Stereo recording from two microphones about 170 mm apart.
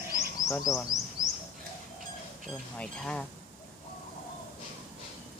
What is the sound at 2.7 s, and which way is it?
Speech, 5° left (ahead or behind).